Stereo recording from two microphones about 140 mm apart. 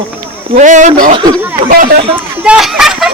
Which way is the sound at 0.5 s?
65° right (ahead or behind).